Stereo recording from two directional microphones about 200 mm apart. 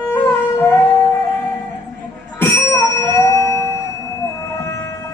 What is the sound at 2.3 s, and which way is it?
Bicycle bell, 15° left (ahead or behind).